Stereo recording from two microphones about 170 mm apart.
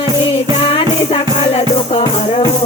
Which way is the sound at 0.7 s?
35° left (ahead or behind).